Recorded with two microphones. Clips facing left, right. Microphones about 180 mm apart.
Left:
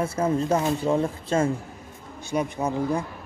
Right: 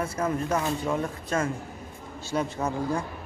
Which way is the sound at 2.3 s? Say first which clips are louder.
Left 2 dB; 15° left (ahead or behind).